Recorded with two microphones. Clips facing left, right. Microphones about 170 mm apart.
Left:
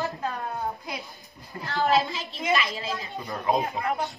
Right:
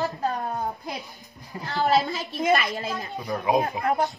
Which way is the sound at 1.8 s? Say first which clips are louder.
Right 1 dB; 45° right (ahead or behind).